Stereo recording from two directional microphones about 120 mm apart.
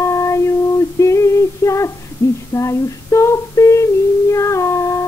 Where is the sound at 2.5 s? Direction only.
25° left (ahead or behind).